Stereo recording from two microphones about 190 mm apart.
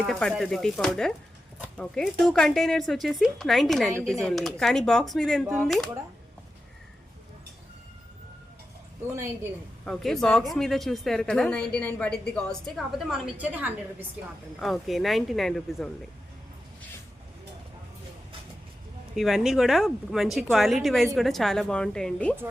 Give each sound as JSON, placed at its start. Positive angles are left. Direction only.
{"t": 0.0, "sound": "speech", "side_deg": 0}
{"t": 9.8, "sound": "speech", "side_deg": 5}
{"t": 19.1, "sound": "speech", "side_deg": 0}